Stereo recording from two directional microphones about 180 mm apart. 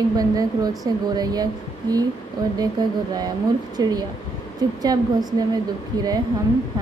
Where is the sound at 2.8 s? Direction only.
20° right (ahead or behind).